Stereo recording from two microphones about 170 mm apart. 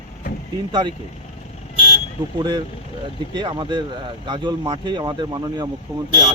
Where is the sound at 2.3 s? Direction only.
25° right (ahead or behind).